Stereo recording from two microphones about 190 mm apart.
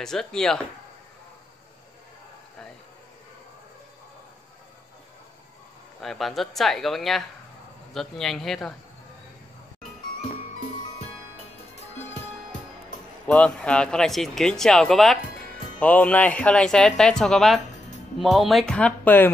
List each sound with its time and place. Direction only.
0.0 s speech: 5° left (ahead or behind)
5.9 s speech: centre (ahead or behind)
13.3 s speech: 5° left (ahead or behind)